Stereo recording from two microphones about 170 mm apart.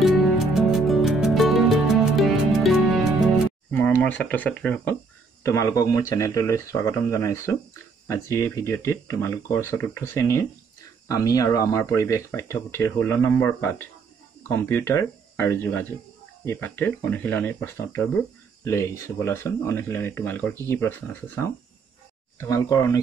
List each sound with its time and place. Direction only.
0.0 s music: centre (ahead or behind)
4.0 s speech: 10° left (ahead or behind)
5.4 s speech: 15° left (ahead or behind)